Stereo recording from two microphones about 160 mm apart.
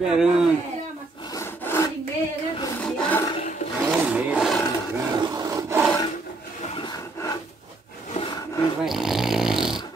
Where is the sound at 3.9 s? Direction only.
5° right (ahead or behind).